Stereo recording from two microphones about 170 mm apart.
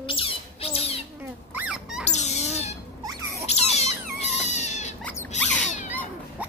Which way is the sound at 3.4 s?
40° left (ahead or behind).